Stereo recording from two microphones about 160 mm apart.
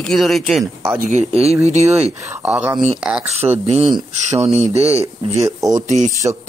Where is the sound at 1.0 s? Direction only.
50° right (ahead or behind).